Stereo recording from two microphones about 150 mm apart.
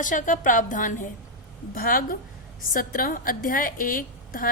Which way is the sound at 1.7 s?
70° left (ahead or behind).